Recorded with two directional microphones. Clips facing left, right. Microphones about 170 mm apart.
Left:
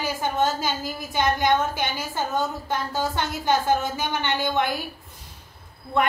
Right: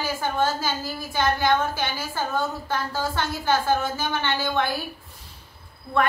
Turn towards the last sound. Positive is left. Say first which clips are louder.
# even
turn(degrees=20)  # may be behind; listen again after turning